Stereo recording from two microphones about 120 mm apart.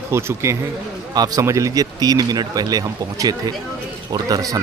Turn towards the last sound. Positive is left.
turn(degrees=-30)  # may be behind; listen again after turning